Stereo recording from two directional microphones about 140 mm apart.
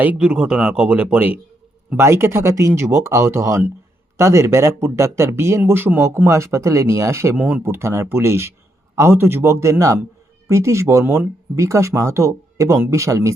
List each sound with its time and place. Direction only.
0.0 s speech: 10° right (ahead or behind)
7.3 s speech: 10° right (ahead or behind)